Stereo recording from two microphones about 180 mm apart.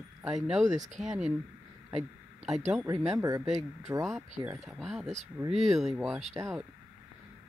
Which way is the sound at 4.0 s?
Centre (ahead or behind).